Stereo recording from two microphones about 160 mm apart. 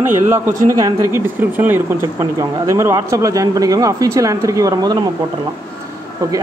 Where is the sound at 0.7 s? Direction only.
15° right (ahead or behind).